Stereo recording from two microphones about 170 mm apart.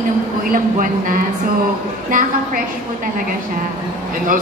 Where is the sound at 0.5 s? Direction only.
50° right (ahead or behind).